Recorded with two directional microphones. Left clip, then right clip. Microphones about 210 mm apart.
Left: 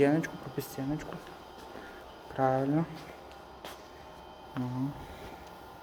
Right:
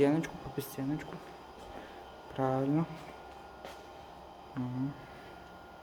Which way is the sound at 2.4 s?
5° right (ahead or behind).